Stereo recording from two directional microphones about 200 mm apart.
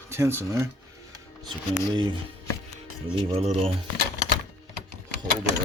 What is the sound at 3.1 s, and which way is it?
Speech, 30° right (ahead or behind).